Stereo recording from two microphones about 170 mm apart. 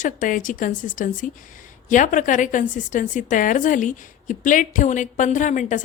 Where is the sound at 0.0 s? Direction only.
50° left (ahead or behind).